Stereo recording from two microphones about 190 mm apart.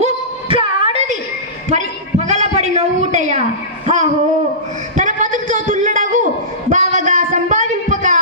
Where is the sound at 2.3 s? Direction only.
35° right (ahead or behind).